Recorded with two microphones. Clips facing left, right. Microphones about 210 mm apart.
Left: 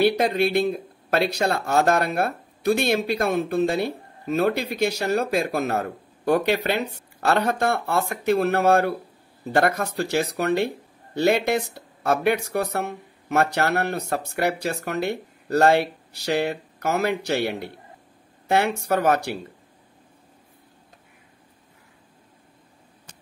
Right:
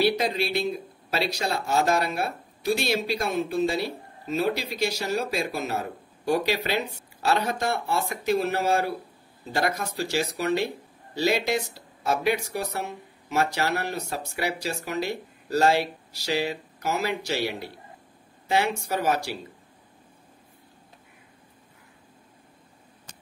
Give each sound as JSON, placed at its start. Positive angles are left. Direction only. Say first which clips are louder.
{"t": 0.0, "sound": "speech", "louder": "left 4 dB", "side_deg": 55}